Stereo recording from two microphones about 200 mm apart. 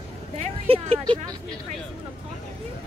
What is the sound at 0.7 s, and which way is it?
Speech, 25° right (ahead or behind).